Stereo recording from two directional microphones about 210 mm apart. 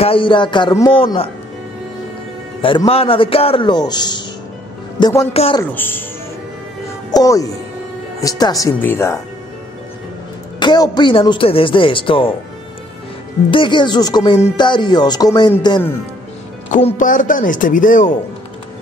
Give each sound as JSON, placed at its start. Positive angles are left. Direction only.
{"t": 0.0, "sound": "speech", "side_deg": 25}
{"t": 2.6, "sound": "a man's voice", "side_deg": 25}
{"t": 5.3, "sound": "speech", "side_deg": 30}
{"t": 5.6, "sound": "speech", "side_deg": 10}
{"t": 7.1, "sound": "speech", "side_deg": 15}
{"t": 10.6, "sound": "speech", "side_deg": 20}
{"t": 13.5, "sound": "speech", "side_deg": 25}
{"t": 16.7, "sound": "speech", "side_deg": 35}